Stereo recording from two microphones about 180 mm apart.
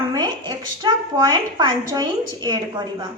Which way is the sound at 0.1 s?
20° right (ahead or behind).